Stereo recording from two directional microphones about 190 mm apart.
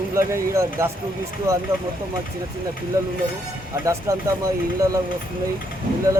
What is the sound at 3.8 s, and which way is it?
Speech, 15° right (ahead or behind).